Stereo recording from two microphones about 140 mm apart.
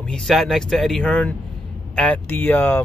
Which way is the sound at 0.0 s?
5° left (ahead or behind).